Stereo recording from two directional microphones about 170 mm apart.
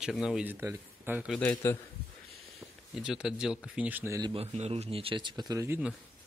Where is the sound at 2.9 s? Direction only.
Centre (ahead or behind).